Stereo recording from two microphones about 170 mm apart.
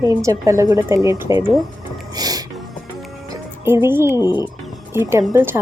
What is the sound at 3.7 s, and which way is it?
Speech, 15° right (ahead or behind).